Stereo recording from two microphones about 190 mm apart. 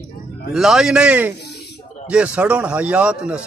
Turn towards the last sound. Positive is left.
turn(degrees=-5)  # may be behind; listen again after turning